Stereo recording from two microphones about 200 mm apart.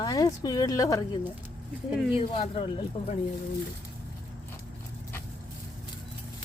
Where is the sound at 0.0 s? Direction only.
20° left (ahead or behind).